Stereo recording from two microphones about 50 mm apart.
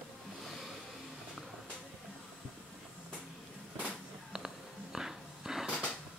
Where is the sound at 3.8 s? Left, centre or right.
Centre.